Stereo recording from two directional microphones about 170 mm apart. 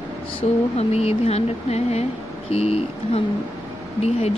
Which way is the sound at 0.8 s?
40° left (ahead or behind).